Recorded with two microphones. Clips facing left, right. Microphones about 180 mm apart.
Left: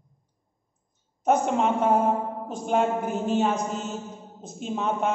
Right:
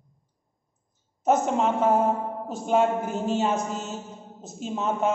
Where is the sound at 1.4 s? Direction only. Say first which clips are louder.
Even; centre (ahead or behind).